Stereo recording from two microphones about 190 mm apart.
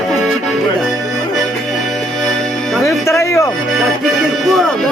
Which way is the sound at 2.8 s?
15° left (ahead or behind).